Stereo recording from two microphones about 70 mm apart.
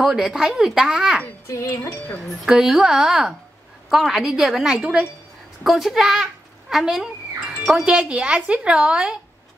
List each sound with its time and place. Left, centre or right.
0.0 s a woman's voice: centre
1.5 s music: left
2.4 s a woman's voice: centre
7.8 s a woman's voice: centre